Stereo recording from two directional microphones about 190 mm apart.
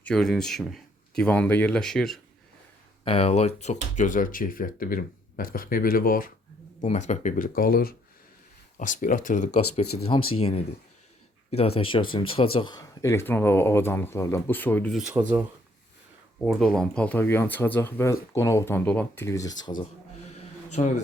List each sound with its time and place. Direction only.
0.0 s speech: 5° left (ahead or behind)
3.0 s speech: 30° left (ahead or behind); by 6.3 s 50° left (ahead or behind)
6.8 s speech: 35° left (ahead or behind); by 15.1 s centre (ahead or behind)
16.4 s speech: centre (ahead or behind); by 19.7 s 20° left (ahead or behind)
20.3 s a sound: 40° left (ahead or behind)